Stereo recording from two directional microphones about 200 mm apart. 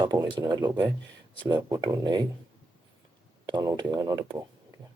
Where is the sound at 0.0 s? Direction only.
20° right (ahead or behind).